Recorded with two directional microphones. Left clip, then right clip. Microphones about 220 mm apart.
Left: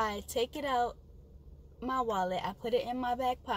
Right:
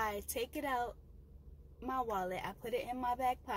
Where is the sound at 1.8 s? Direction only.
15° left (ahead or behind).